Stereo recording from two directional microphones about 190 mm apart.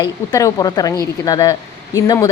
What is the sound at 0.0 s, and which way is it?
A woman's voice, 20° left (ahead or behind).